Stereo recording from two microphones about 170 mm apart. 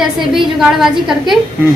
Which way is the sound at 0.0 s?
5° right (ahead or behind).